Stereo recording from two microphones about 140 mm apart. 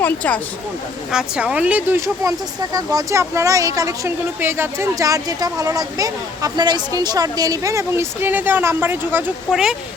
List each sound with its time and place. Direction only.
0.0 s speech: 10° left (ahead or behind)
1.1 s speech: 5° right (ahead or behind)
9.5 s speech: 5° right (ahead or behind)